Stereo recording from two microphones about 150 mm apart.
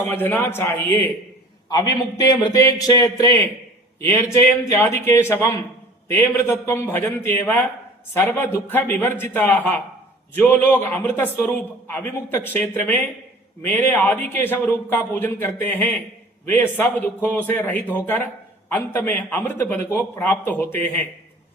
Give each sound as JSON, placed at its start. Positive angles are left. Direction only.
{"t": 0.1, "sound": "a man's voice", "side_deg": 15}
{"t": 1.7, "sound": "a man's voice", "side_deg": 25}